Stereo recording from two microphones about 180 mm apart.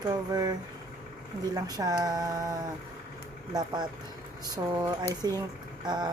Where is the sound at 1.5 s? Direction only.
20° right (ahead or behind).